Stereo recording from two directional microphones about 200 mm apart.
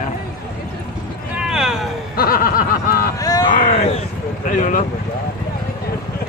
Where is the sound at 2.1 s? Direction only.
45° left (ahead or behind).